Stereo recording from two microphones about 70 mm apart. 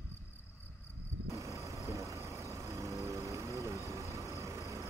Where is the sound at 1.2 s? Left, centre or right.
Right.